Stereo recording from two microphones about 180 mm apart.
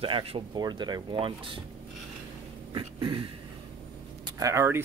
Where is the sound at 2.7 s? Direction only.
25° right (ahead or behind).